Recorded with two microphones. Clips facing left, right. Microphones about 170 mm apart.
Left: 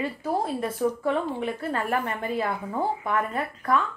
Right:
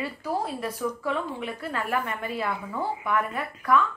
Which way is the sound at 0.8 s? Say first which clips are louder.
Left 4 dB; 45° left (ahead or behind).